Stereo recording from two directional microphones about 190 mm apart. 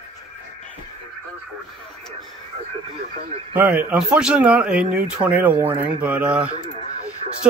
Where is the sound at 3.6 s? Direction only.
10° right (ahead or behind).